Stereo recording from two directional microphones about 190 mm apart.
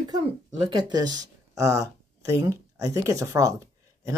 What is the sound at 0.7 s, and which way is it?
Speech, 20° right (ahead or behind).